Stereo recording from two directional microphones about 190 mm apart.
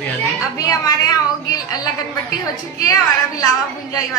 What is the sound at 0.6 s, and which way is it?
A woman's voice, 20° left (ahead or behind).